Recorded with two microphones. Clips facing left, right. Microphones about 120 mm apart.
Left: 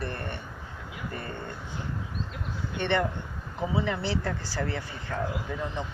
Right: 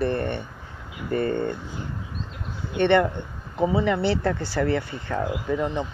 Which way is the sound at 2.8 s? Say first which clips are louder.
Right 8 dB; 60° right (ahead or behind).